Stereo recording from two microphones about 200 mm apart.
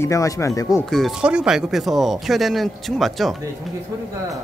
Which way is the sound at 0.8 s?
Centre (ahead or behind).